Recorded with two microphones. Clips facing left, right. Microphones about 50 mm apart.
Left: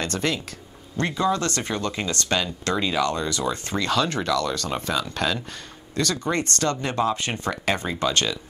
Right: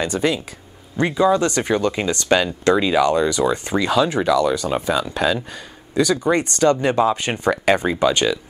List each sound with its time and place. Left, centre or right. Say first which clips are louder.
0.0 s speech: right 5 dB; centre